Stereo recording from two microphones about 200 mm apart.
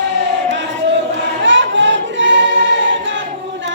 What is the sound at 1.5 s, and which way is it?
Choir, 65° right (ahead or behind).